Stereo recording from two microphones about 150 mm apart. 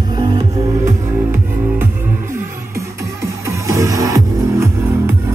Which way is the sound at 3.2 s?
20° right (ahead or behind).